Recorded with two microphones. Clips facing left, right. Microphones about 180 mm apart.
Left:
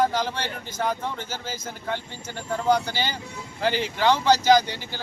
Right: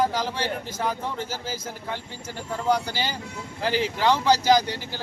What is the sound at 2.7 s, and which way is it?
Speech, 5° right (ahead or behind).